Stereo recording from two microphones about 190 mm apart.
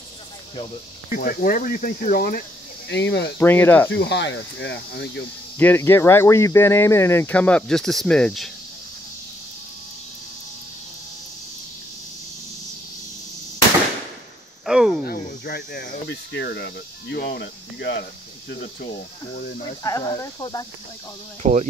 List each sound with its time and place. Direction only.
1.1 s speech: 50° left (ahead or behind)
2.9 s speech: 70° left (ahead or behind)
3.3 s speech: 10° left (ahead or behind)
3.9 s speech: 70° left (ahead or behind)
5.6 s speech: 10° left (ahead or behind)
14.7 s a sound: centre (ahead or behind)
15.0 s cricket: 55° left (ahead or behind)
18.5 s speech: 60° left (ahead or behind)
19.8 s speech: 15° left (ahead or behind)
21.4 s speech: 40° right (ahead or behind)